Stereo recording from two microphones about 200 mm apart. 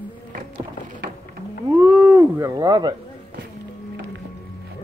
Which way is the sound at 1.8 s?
10° right (ahead or behind).